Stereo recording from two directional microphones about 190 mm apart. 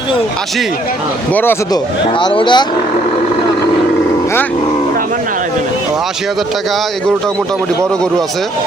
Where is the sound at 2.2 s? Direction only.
25° left (ahead or behind).